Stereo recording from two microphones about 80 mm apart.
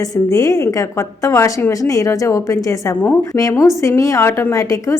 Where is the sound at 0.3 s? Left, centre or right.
Left.